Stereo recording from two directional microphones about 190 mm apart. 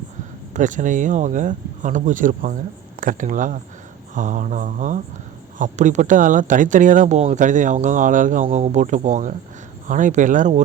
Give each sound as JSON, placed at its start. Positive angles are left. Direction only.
{"t": 0.5, "sound": "speech", "side_deg": -40}